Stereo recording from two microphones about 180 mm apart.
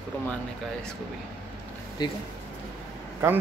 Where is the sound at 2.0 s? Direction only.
25° left (ahead or behind).